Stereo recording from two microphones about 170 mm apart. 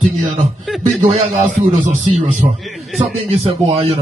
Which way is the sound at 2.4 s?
30° right (ahead or behind).